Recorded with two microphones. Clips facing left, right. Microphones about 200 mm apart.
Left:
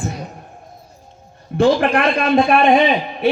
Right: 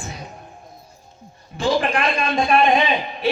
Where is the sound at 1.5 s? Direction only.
60° left (ahead or behind).